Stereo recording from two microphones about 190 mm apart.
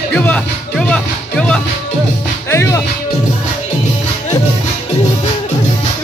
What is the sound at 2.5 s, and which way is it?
Music, 15° left (ahead or behind).